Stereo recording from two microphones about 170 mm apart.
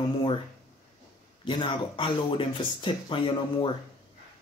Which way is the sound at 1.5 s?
30° left (ahead or behind).